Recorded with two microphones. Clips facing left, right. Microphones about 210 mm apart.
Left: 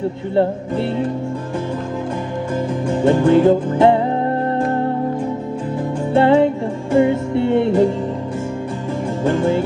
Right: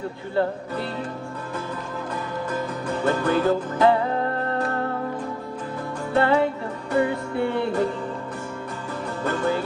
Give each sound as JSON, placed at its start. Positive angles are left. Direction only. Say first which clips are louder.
{"t": 2.9, "sound": "music", "louder": "left 9 dB", "side_deg": 25}
{"t": 6.1, "sound": "music", "louder": "left 7 dB", "side_deg": 25}
{"t": 9.2, "sound": "music", "louder": "left 7 dB", "side_deg": 15}